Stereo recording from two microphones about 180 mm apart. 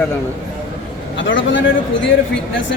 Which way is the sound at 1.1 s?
90° left.